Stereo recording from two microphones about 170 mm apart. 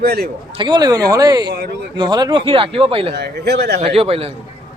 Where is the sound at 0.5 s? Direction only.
25° right (ahead or behind).